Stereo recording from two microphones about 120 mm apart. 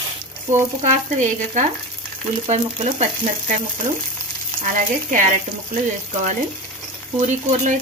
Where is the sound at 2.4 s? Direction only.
75° right (ahead or behind).